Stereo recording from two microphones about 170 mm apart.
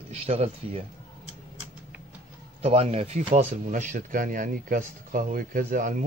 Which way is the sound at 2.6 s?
35° right (ahead or behind).